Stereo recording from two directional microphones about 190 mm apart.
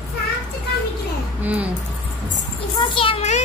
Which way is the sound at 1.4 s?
10° right (ahead or behind).